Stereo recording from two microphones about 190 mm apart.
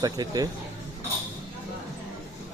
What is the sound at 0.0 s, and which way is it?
Speech, 20° right (ahead or behind).